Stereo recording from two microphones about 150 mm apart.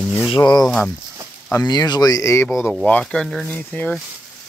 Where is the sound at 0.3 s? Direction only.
25° left (ahead or behind).